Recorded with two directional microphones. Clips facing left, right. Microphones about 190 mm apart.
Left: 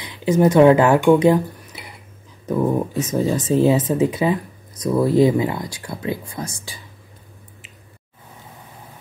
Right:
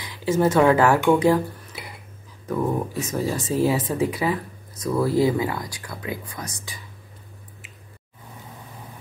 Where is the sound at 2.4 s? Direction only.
20° left (ahead or behind).